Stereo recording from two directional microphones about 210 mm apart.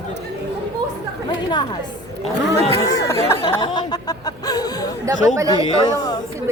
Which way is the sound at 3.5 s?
20° left (ahead or behind).